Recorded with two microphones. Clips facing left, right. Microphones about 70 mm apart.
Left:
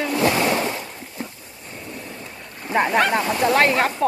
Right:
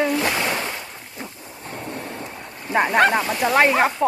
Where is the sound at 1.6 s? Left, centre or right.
Right.